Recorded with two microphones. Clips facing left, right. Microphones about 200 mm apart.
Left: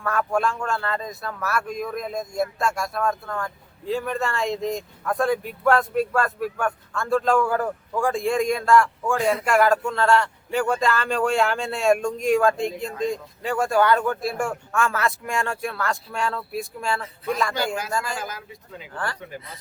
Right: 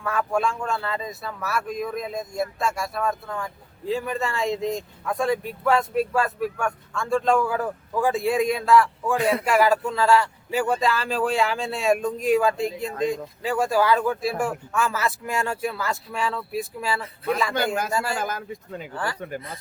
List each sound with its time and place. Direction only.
0.0 s speech: centre (ahead or behind)
18.2 s speech: 50° right (ahead or behind)